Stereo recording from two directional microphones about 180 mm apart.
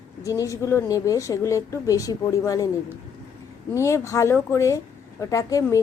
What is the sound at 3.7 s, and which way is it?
Speech, 15° left (ahead or behind).